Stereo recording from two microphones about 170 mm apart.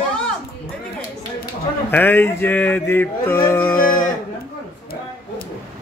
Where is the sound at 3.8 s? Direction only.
55° left (ahead or behind).